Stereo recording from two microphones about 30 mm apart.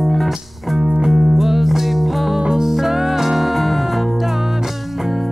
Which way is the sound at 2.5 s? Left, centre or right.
Centre.